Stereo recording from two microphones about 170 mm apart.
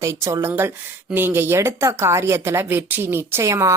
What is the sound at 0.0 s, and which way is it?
A woman's voice, 15° right (ahead or behind).